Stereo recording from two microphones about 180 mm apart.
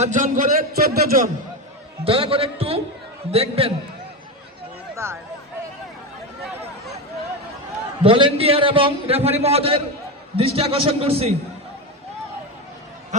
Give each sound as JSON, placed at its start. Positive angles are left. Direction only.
{"t": 0.0, "sound": "a man's voice", "side_deg": -45}
{"t": 2.0, "sound": "a man's voice", "side_deg": -30}
{"t": 5.0, "sound": "speech", "side_deg": -15}
{"t": 8.0, "sound": "a man's voice", "side_deg": -30}